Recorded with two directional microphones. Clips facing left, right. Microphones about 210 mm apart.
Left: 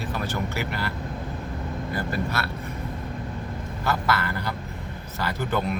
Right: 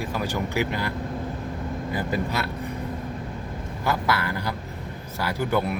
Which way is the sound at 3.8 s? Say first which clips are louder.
Right 1 dB; 10° right (ahead or behind).